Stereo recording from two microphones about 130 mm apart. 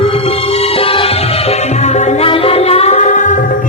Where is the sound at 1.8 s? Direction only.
60° left (ahead or behind).